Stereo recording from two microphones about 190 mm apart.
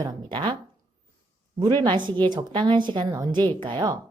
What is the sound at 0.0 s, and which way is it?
Speech, 20° right (ahead or behind).